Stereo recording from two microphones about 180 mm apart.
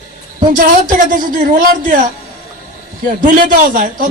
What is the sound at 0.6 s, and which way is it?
A man's voice, 50° right (ahead or behind).